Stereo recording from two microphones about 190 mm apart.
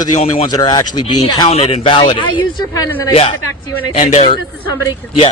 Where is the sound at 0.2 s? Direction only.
35° left (ahead or behind).